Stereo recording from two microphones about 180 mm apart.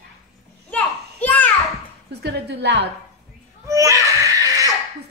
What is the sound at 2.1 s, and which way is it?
Speech, 65° right (ahead or behind).